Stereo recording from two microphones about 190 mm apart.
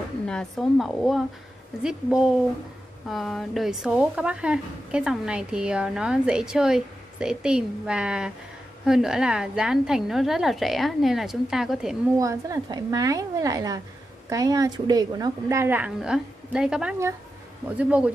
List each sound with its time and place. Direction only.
0.3 s speech: centre (ahead or behind)
12.2 s a woman's voice: 15° right (ahead or behind)